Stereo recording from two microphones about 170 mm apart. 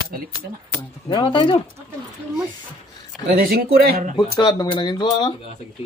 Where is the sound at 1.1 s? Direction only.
30° left (ahead or behind).